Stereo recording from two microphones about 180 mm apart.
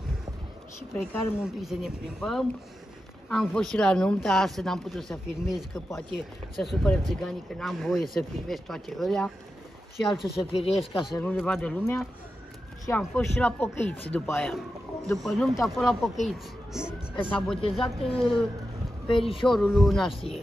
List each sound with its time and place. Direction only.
1.4 s a woman's voice: centre (ahead or behind)
10.4 s speech: 30° left (ahead or behind)
11.1 s speech: 10° left (ahead or behind)
15.2 s a woman's voice: centre (ahead or behind)
17.6 s speech: 30° left (ahead or behind)
17.8 s a woman's voice: centre (ahead or behind)
19.0 s speech: 30° left (ahead or behind)
19.4 s a woman's voice: centre (ahead or behind)
20.1 s speech: 30° left (ahead or behind)